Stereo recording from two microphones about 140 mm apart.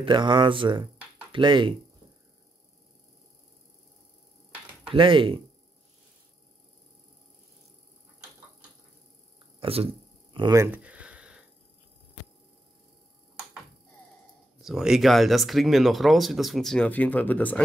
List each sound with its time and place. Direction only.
0.0 s speech: 35° right (ahead or behind)
4.8 s speech: 35° right (ahead or behind)
9.6 s a sound: 45° right (ahead or behind)
10.5 s speech: 20° right (ahead or behind)
10.8 s a sound: 10° right (ahead or behind)
14.6 s speech: 5° right (ahead or behind)